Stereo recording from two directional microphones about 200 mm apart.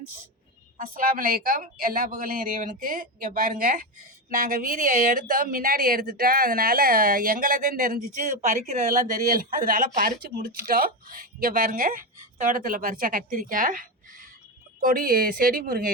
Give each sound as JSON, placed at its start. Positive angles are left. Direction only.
{"t": 0.8, "sound": "speech", "side_deg": -45}